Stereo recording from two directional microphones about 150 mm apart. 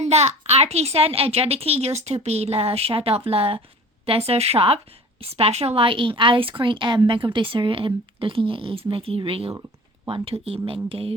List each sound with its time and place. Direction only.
0.0 s a woman's voice: 45° right (ahead or behind)